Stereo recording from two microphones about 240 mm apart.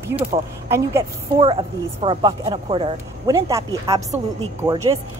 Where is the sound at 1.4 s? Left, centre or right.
Right.